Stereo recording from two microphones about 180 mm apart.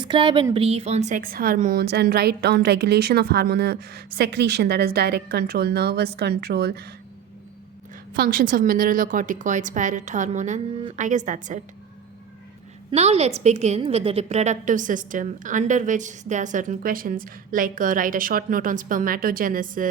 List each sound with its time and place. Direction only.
0.0 s a woman's voice: 25° right (ahead or behind); by 6.9 s 60° right (ahead or behind)
8.1 s a woman's voice: 55° right (ahead or behind)
12.9 s a woman's voice: 35° right (ahead or behind)